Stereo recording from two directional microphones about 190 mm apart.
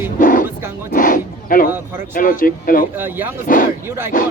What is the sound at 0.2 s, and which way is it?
Music, 45° left (ahead or behind).